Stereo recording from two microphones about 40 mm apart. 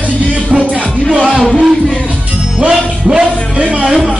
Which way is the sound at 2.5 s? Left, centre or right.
Right.